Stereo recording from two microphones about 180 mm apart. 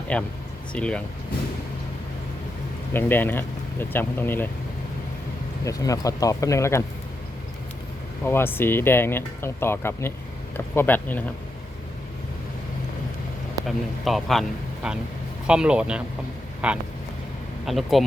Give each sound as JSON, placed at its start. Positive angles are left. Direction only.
{"t": 0.1, "sound": "speech", "side_deg": 5}
{"t": 2.9, "sound": "speech", "side_deg": 10}
{"t": 5.6, "sound": "speech", "side_deg": 20}
{"t": 8.2, "sound": "speech", "side_deg": 10}
{"t": 13.7, "sound": "speech", "side_deg": 0}